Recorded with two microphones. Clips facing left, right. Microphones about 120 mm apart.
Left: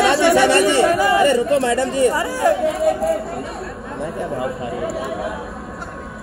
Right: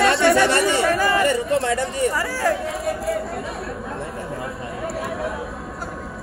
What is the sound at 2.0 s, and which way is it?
Speech, 20° left (ahead or behind).